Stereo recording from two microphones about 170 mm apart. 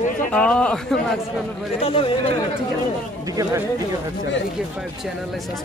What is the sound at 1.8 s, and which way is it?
Speech, 35° left (ahead or behind).